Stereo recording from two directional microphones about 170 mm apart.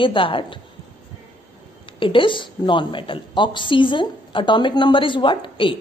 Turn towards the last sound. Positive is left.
turn(degrees=30)  # may be behind; listen again after turning